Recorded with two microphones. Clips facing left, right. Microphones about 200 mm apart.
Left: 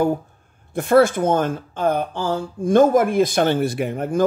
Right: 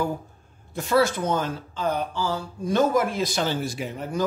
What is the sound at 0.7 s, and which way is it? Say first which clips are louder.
Speech: left 7 dB; 55° left (ahead or behind).